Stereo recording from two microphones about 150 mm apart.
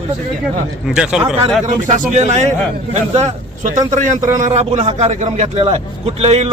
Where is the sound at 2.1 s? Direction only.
50° right (ahead or behind).